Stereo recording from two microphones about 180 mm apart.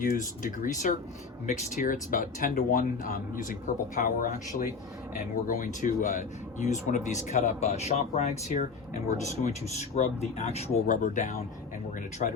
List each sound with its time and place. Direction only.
0.0 s speech: 50° left (ahead or behind)